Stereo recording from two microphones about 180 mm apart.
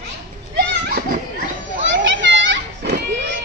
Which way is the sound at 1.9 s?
90° right.